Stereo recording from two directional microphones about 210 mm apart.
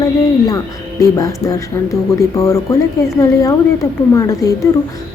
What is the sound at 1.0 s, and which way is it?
Speech, 15° left (ahead or behind).